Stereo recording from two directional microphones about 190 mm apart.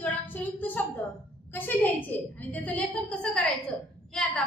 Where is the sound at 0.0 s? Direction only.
10° left (ahead or behind).